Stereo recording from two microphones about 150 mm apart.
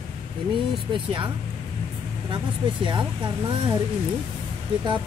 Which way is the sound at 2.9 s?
30° right (ahead or behind).